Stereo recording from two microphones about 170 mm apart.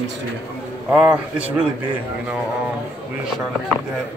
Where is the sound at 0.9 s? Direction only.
5° right (ahead or behind).